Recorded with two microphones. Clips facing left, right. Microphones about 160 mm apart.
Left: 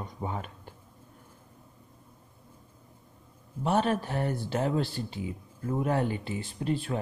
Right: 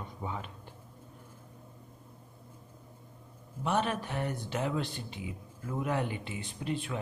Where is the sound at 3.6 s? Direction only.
35° left (ahead or behind).